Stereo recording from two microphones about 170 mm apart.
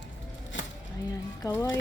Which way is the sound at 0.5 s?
90° left.